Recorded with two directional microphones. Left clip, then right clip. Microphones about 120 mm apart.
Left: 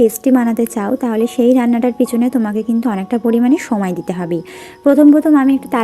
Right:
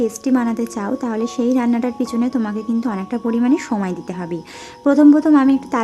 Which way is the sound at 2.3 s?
35° left (ahead or behind).